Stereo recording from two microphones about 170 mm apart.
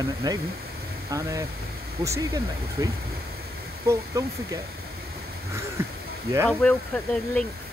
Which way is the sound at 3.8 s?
20° right (ahead or behind).